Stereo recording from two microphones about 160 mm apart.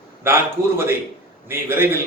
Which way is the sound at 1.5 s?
15° right (ahead or behind).